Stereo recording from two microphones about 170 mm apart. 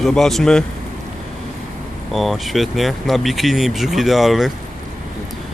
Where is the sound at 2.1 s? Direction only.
Centre (ahead or behind).